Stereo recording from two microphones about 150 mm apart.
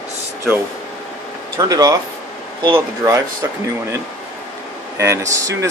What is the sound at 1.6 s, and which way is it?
Speech, 25° right (ahead or behind).